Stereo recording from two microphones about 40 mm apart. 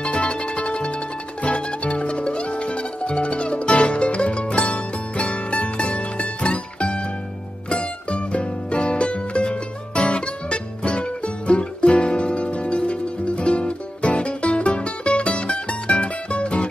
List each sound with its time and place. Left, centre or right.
0.0 s music: left